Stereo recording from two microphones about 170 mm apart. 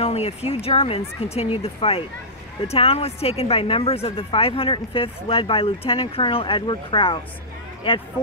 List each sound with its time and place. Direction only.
0.0 s speech: 40° left (ahead or behind)